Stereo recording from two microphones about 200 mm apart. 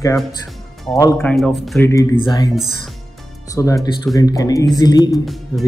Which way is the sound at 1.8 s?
15° left (ahead or behind).